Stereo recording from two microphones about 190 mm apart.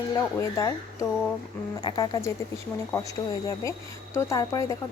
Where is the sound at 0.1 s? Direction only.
15° left (ahead or behind).